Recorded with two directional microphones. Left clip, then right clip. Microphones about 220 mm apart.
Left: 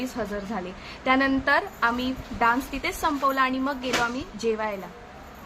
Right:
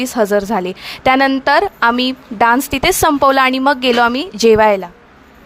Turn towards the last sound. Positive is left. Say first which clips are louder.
# right 18 dB
turn(degrees=-50)  # may be behind; listen again after turning